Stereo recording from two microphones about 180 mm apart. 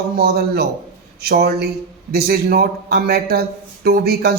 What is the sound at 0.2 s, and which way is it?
A man's voice, 60° right (ahead or behind).